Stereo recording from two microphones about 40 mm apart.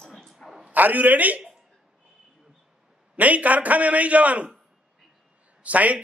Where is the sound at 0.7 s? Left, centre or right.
Right.